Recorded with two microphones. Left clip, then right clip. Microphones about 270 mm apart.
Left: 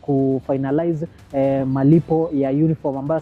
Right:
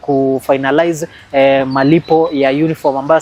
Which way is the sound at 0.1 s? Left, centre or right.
Right.